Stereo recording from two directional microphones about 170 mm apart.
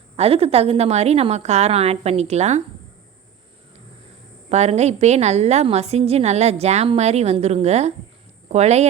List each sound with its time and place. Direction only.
0.2 s a woman's voice: 35° right (ahead or behind)
4.4 s a woman's voice: 40° right (ahead or behind)